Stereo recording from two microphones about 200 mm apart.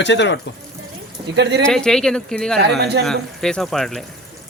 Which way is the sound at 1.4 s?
55° right (ahead or behind).